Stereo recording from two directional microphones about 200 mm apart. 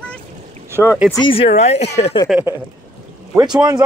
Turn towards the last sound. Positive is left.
turn(degrees=-20)  # may be behind; listen again after turning